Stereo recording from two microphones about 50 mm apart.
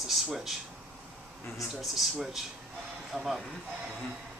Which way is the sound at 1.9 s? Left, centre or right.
Centre.